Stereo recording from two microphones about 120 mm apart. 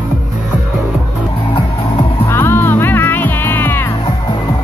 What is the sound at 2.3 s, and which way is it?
Music, 20° left (ahead or behind).